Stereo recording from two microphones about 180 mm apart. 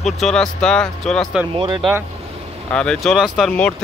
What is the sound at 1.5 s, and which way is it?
Speech, 25° right (ahead or behind).